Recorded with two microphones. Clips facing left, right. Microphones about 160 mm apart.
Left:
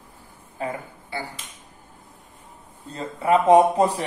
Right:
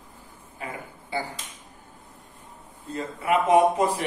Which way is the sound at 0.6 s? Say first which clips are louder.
Left 8 dB; 35° left (ahead or behind).